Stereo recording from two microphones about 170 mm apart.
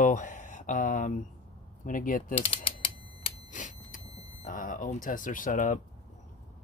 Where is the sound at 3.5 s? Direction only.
45° left (ahead or behind).